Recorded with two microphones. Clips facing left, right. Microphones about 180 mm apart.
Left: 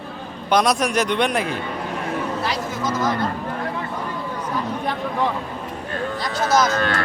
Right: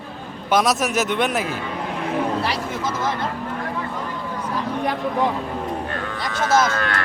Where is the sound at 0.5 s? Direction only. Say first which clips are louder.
Left 1 dB; 5° right (ahead or behind).